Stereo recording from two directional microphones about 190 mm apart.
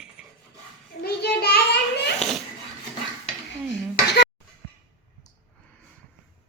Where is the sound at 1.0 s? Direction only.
55° left (ahead or behind).